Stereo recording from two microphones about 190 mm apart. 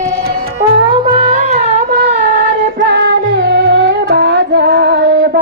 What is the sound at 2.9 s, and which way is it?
Music, 60° right (ahead or behind).